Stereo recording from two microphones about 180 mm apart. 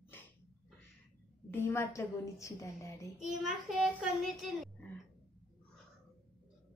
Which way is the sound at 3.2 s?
Centre (ahead or behind).